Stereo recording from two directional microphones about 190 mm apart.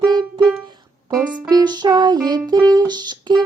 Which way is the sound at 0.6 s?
20° right (ahead or behind).